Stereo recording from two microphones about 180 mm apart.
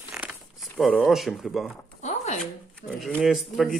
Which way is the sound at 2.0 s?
40° left (ahead or behind).